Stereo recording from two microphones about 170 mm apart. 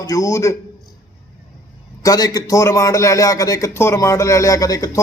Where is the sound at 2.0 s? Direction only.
20° left (ahead or behind).